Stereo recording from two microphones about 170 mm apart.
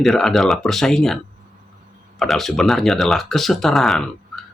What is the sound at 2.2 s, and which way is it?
Speech, centre (ahead or behind).